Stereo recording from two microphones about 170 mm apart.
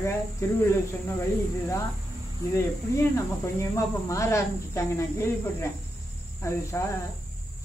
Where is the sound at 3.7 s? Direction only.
20° left (ahead or behind).